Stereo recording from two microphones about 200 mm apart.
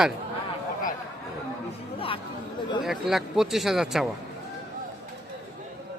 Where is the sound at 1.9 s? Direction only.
25° left (ahead or behind).